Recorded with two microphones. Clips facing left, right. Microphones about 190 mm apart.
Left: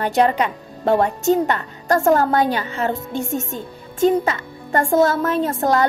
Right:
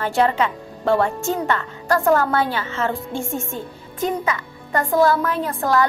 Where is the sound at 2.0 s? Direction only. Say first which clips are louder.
Left 2 dB; 45° left (ahead or behind).